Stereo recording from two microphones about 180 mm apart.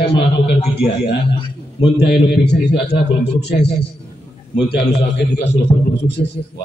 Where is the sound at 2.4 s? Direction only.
70° left (ahead or behind).